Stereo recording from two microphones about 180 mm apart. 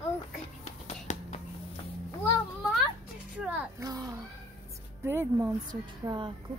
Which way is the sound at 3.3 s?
5° right (ahead or behind).